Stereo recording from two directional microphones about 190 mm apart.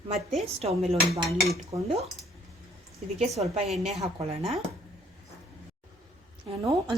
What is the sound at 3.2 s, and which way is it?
A woman's voice, 35° right (ahead or behind).